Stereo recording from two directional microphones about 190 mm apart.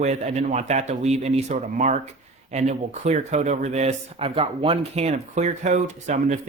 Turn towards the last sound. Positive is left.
turn(degrees=-40)  # may be behind; listen again after turning